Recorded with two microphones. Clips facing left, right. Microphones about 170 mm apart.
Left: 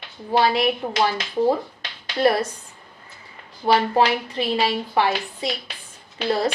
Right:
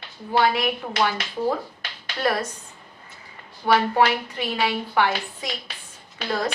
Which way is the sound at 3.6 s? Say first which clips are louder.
Left 1 dB; 25° left (ahead or behind).